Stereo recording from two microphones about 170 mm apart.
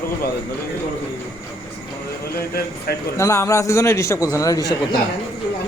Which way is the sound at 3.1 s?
20° left (ahead or behind).